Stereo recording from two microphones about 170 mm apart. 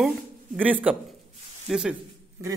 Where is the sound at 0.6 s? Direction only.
10° right (ahead or behind).